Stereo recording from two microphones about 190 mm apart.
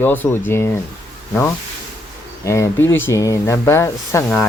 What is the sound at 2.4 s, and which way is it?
Speech, 15° left (ahead or behind).